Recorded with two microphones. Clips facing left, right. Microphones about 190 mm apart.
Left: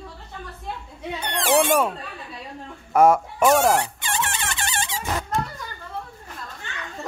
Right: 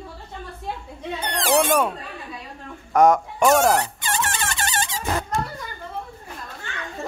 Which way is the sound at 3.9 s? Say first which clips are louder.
Right 2 dB; 40° right (ahead or behind).